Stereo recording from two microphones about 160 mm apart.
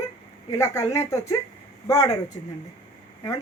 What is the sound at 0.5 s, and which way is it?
Speech, 20° left (ahead or behind).